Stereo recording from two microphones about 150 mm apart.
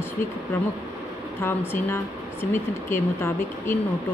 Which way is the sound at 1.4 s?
15° left (ahead or behind).